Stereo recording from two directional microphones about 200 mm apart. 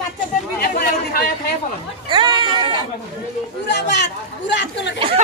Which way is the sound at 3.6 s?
60° left (ahead or behind).